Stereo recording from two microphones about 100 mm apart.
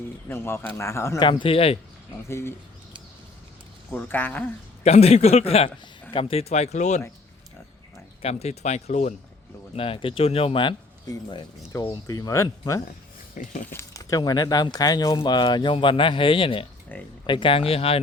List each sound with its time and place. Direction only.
0.3 s a man's voice: 25° left (ahead or behind)
1.2 s speech: 55° left (ahead or behind); by 1.8 s 75° left (ahead or behind)
3.9 s speech: 15° left (ahead or behind)
4.8 s a man's voice: 90° left
6.1 s a man's voice: 70° left (ahead or behind); by 6.7 s 90° left
8.2 s a man's voice: 90° left
9.7 s speech: 65° left (ahead or behind)
11.1 s speech: 40° left (ahead or behind); by 16.6 s 60° left (ahead or behind)
16.9 s a man's voice: 20° left (ahead or behind)
17.2 s speech: 55° left (ahead or behind); by 18.0 s 75° left (ahead or behind)